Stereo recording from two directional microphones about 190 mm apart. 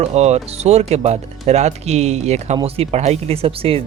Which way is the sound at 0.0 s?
35° right (ahead or behind).